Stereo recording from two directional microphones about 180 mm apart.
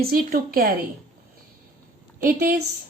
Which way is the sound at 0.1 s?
55° right (ahead or behind).